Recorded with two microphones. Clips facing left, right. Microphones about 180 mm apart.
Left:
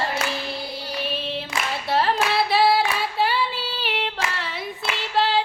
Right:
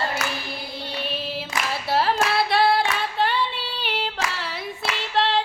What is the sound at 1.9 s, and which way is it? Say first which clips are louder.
Female singing: even; centre (ahead or behind).